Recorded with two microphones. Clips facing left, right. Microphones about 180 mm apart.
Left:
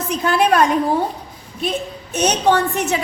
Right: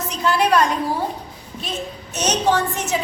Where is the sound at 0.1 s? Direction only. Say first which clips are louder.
Left 2 dB; 50° left (ahead or behind).